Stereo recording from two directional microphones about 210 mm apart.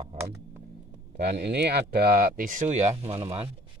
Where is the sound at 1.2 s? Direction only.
55° right (ahead or behind).